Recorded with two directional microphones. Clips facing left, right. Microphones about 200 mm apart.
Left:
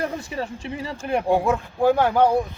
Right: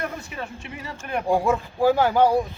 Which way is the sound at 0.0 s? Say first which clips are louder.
Left 4 dB; 30° left (ahead or behind).